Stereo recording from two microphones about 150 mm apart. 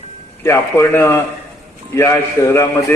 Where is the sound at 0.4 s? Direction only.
15° left (ahead or behind).